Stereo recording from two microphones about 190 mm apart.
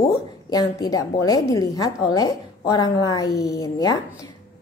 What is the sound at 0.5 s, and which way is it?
A woman's voice, 20° left (ahead or behind).